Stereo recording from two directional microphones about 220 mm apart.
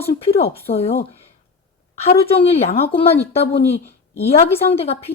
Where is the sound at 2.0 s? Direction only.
25° left (ahead or behind).